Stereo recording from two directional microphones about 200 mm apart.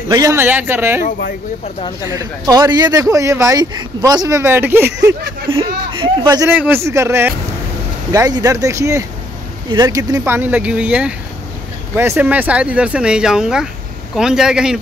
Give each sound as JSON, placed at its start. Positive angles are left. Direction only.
{"t": 0.1, "sound": "speech", "side_deg": -15}
{"t": 1.8, "sound": "speech", "side_deg": 20}
{"t": 2.0, "sound": "speech", "side_deg": -15}
{"t": 5.6, "sound": "speech", "side_deg": -25}
{"t": 6.2, "sound": "speech", "side_deg": -10}